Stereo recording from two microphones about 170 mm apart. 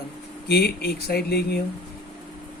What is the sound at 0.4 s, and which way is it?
Speech, 70° left (ahead or behind).